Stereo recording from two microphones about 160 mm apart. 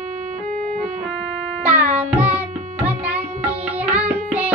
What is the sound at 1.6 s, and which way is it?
Music, 10° right (ahead or behind).